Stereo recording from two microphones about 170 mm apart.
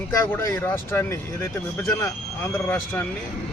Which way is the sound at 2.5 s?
10° left (ahead or behind).